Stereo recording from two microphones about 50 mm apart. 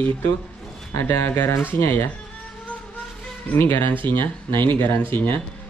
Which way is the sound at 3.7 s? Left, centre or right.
Left.